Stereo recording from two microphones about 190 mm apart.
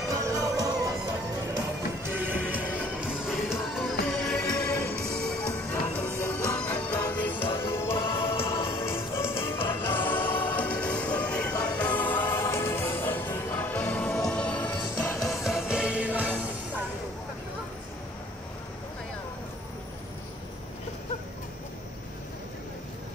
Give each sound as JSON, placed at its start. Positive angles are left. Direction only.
{"t": 0.1, "sound": "music", "side_deg": -15}
{"t": 2.1, "sound": "music", "side_deg": -10}
{"t": 5.7, "sound": "music", "side_deg": 10}